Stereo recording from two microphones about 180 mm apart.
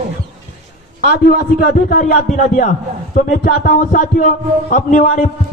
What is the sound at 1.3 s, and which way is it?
A man's voice, 55° left (ahead or behind).